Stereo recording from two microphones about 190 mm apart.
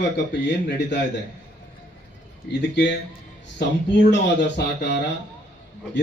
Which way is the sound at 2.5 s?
65° left (ahead or behind).